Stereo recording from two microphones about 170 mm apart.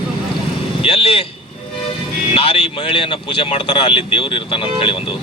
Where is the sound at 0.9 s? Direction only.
35° left (ahead or behind).